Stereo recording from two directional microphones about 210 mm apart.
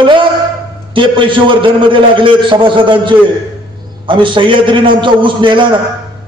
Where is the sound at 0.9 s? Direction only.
25° right (ahead or behind).